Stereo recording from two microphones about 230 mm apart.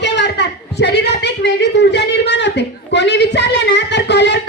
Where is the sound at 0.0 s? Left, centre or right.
Left.